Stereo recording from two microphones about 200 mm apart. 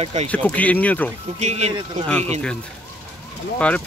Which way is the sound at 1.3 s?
35° right (ahead or behind).